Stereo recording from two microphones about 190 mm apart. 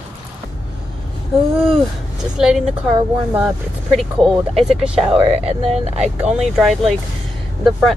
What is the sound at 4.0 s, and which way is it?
Speech, centre (ahead or behind).